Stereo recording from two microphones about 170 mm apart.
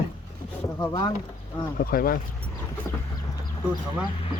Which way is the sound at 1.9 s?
60° left (ahead or behind).